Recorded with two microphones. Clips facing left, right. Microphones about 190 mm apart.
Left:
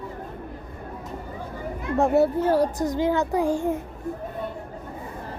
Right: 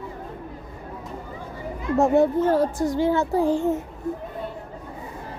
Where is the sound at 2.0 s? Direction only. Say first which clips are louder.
Right 1 dB; 5° left (ahead or behind).